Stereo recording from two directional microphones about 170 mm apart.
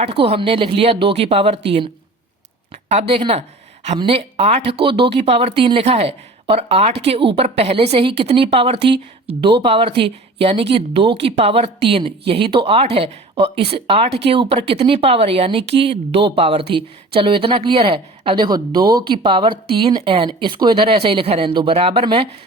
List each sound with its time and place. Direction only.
0.0 s speech: 35° right (ahead or behind)
2.9 s speech: 35° right (ahead or behind)